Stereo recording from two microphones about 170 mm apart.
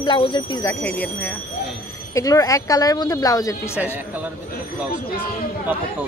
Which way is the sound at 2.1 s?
20° left (ahead or behind).